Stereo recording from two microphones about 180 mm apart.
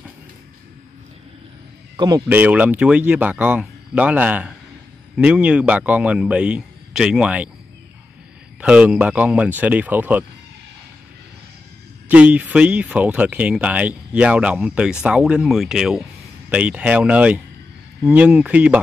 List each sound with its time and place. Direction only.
2.0 s speech: 20° right (ahead or behind)
2.2 s speech: 10° right (ahead or behind)
8.5 s speech: 5° right (ahead or behind)
12.1 s speech: 10° right (ahead or behind)